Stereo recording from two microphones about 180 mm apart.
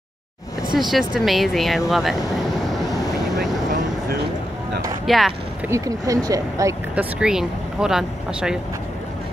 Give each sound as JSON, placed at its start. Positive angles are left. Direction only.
{"t": 0.9, "sound": "speech", "side_deg": 0}
{"t": 5.0, "sound": "speech", "side_deg": 0}
{"t": 5.7, "sound": "speech", "side_deg": -20}
{"t": 7.0, "sound": "speech", "side_deg": -5}